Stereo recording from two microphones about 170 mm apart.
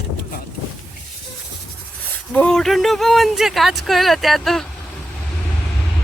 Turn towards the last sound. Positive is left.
turn(degrees=0)  # may be behind; listen again after turning